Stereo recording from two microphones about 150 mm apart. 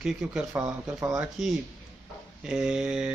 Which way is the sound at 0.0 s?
5° right (ahead or behind).